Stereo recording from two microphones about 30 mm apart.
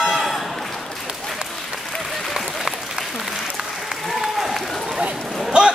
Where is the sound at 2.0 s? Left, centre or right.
Centre.